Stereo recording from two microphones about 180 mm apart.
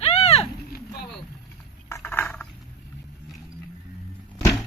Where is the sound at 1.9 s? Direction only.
10° left (ahead or behind).